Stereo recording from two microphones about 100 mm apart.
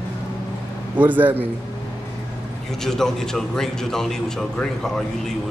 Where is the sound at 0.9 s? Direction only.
15° right (ahead or behind).